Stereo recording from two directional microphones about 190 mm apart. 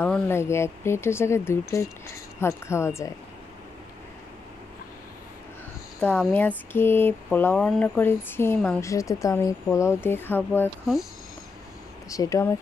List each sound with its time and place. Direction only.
0.0 s speech: 10° left (ahead or behind)
5.9 s speech: 10° left (ahead or behind)
12.1 s speech: 15° left (ahead or behind)